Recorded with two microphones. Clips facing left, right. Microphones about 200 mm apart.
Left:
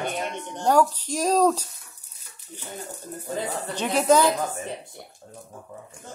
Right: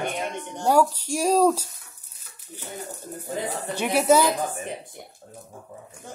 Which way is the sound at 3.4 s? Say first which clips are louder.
Right 1 dB; 15° right (ahead or behind).